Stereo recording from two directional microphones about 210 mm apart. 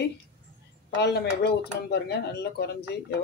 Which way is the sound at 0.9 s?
50° left (ahead or behind).